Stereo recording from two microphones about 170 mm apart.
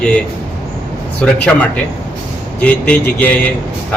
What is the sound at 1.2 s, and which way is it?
A man's voice, 5° left (ahead or behind).